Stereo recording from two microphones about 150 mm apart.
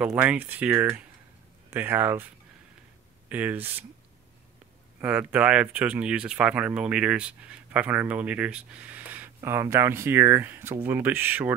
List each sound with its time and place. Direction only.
0.0 s speech: 10° right (ahead or behind)
3.3 s speech: 10° right (ahead or behind)
5.0 s speech: 10° right (ahead or behind)